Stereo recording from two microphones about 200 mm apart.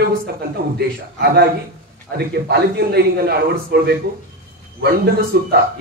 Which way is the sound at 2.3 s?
55° right (ahead or behind).